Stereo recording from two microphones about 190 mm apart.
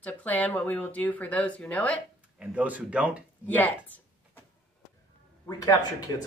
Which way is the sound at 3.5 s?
10° left (ahead or behind).